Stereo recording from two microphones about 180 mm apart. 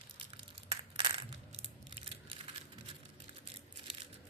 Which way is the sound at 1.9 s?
30° right (ahead or behind).